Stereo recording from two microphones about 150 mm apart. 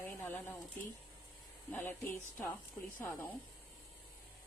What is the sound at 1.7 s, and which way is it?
Speech, 15° left (ahead or behind).